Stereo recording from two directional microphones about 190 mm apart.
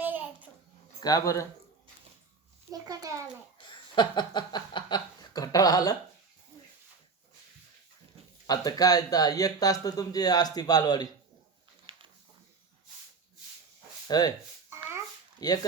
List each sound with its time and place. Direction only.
0.0 s babbling: 10° right (ahead or behind)
1.0 s speech: 20° left (ahead or behind)
2.7 s a child's voice: 20° right (ahead or behind)
3.7 s chuckle: 25° left (ahead or behind)
8.4 s speech: 20° left (ahead or behind)
14.1 s speech: 20° left (ahead or behind)
15.4 s speech: 20° left (ahead or behind)